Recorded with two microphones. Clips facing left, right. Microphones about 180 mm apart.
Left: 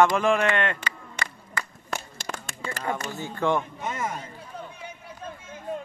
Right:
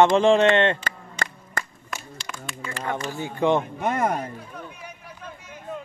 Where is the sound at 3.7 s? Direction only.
60° right (ahead or behind).